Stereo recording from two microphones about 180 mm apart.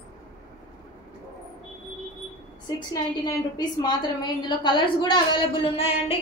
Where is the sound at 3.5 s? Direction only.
20° left (ahead or behind).